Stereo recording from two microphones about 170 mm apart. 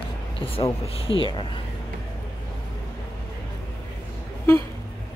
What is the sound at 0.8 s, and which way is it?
Speech, 35° left (ahead or behind).